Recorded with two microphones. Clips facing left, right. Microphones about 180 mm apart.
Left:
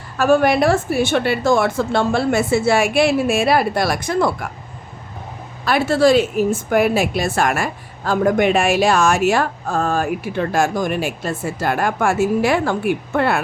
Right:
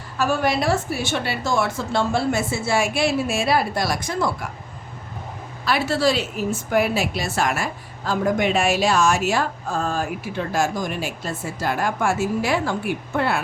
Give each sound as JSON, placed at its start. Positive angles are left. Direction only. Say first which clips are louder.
{"t": 0.2, "sound": "a woman's voice", "louder": "left 7 dB", "side_deg": 55}
{"t": 5.6, "sound": "a woman's voice", "louder": "left 6 dB", "side_deg": 50}